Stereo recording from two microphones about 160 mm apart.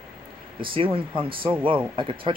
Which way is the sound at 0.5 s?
35° right (ahead or behind).